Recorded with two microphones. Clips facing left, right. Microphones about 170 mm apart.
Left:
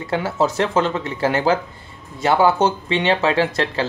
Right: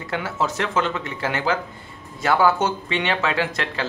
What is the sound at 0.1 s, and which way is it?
Speech, 30° left (ahead or behind).